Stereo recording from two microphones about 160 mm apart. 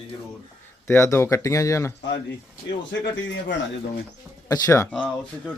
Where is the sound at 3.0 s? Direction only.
90° left.